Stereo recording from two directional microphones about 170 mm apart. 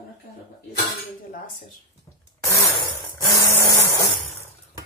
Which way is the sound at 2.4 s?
15° left (ahead or behind).